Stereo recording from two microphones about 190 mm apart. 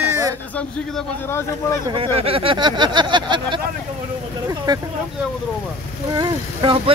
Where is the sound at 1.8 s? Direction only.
25° right (ahead or behind).